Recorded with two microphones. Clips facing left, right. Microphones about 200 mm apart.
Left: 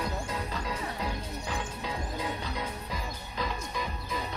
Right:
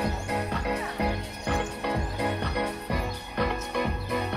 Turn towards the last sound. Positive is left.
turn(degrees=-65)  # may be behind; listen again after turning